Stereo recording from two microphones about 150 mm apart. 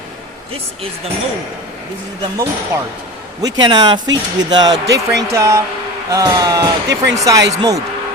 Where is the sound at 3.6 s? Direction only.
30° right (ahead or behind).